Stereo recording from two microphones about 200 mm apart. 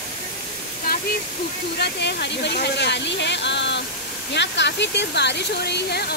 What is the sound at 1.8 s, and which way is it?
Speech, 55° left (ahead or behind).